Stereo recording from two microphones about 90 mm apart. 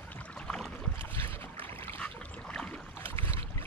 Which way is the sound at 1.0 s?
25° left (ahead or behind).